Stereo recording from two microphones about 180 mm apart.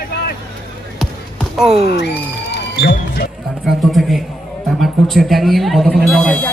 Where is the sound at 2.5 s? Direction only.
65° left (ahead or behind).